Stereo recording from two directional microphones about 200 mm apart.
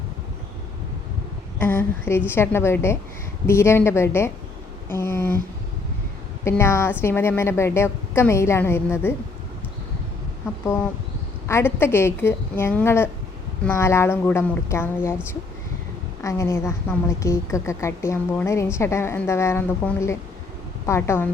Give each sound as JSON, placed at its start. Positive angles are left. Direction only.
{"t": 1.5, "sound": "a woman's voice", "side_deg": 10}
{"t": 6.4, "sound": "a woman's voice", "side_deg": 15}
{"t": 11.4, "sound": "a woman's voice", "side_deg": 10}
{"t": 16.2, "sound": "a woman's voice", "side_deg": 15}